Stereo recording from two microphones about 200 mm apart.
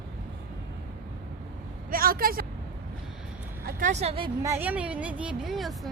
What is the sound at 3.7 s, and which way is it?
Speech, 40° right (ahead or behind).